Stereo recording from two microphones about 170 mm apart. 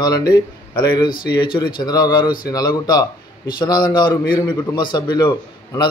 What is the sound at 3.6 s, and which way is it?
A man's voice, 25° left (ahead or behind).